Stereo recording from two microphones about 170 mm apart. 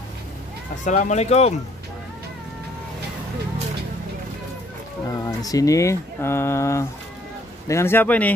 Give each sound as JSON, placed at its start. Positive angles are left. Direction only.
{"t": 0.8, "sound": "speech", "side_deg": 45}
{"t": 5.1, "sound": "speech", "side_deg": 20}